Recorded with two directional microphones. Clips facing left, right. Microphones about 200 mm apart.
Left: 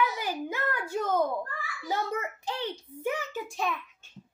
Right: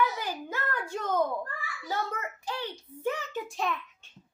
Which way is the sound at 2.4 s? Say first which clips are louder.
Left 2 dB; 15° left (ahead or behind).